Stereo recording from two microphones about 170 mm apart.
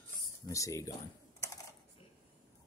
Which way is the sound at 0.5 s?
20° left (ahead or behind).